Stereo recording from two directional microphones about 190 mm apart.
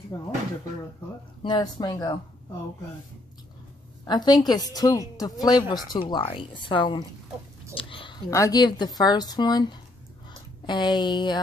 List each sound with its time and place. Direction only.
0.1 s a woman's voice: 20° left (ahead or behind)
1.4 s a woman's voice: 20° left (ahead or behind)
4.0 s a woman's voice: 20° left (ahead or behind)
7.7 s a sound: 25° left (ahead or behind)
8.3 s a woman's voice: 20° left (ahead or behind)